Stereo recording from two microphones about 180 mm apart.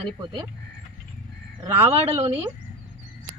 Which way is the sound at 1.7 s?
30° right (ahead or behind).